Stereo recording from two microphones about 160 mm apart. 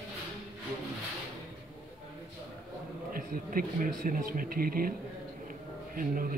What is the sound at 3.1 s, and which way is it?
Speech, 60° right (ahead or behind).